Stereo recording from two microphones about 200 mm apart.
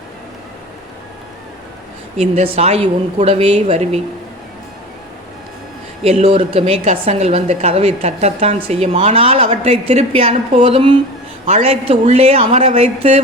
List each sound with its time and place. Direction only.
2.1 s a woman's voice: 30° right (ahead or behind)
6.0 s a woman's voice: 30° right (ahead or behind)